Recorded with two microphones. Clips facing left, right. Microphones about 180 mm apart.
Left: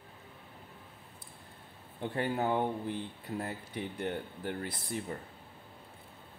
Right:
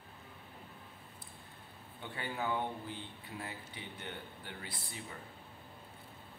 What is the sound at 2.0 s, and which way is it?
Speech, 50° left (ahead or behind).